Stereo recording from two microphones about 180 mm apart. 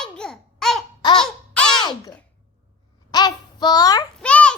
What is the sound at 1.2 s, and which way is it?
Crow, 5° left (ahead or behind).